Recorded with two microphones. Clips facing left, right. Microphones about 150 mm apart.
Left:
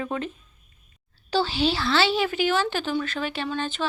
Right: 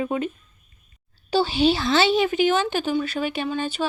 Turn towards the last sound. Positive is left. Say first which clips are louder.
# right 3 dB
turn(degrees=-10)  # may be behind; listen again after turning